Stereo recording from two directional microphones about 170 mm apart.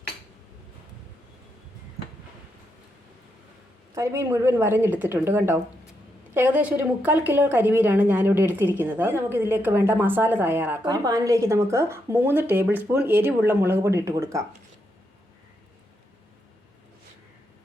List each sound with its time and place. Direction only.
3.9 s a woman's voice: 15° right (ahead or behind)